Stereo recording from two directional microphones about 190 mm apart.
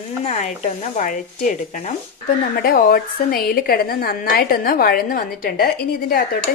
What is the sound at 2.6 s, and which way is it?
A woman's voice, 50° left (ahead or behind).